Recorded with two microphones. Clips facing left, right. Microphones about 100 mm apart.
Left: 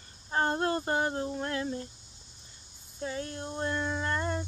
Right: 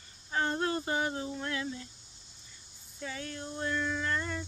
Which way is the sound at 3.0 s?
35° left (ahead or behind).